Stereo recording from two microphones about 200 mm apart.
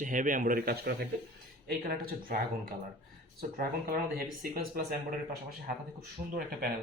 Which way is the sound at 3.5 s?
45° right (ahead or behind).